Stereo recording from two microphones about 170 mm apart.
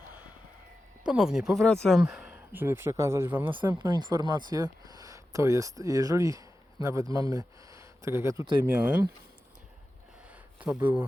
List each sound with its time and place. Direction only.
1.0 s speech: 5° right (ahead or behind)
3.8 s speech: 25° right (ahead or behind)
10.2 s a sound: 5° right (ahead or behind)